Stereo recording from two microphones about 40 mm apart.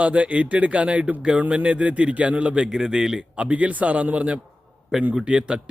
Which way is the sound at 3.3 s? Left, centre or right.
Right.